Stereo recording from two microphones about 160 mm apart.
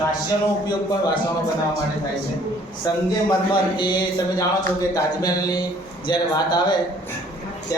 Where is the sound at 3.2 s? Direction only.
30° left (ahead or behind).